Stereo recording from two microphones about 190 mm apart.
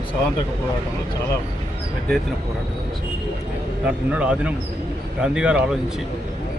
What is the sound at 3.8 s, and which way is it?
Speech, 5° right (ahead or behind).